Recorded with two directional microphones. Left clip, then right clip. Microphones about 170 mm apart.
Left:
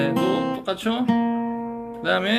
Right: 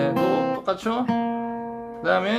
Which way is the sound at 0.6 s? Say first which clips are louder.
Right 1 dB; centre (ahead or behind).